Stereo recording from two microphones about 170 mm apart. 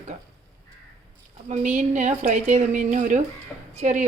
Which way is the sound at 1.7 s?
45° right (ahead or behind).